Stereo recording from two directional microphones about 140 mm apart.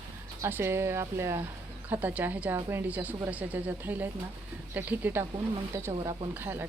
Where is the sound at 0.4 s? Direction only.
15° right (ahead or behind).